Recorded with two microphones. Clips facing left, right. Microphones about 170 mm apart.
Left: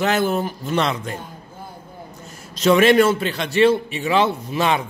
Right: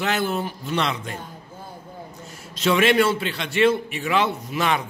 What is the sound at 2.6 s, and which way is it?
A man's voice, 40° left (ahead or behind).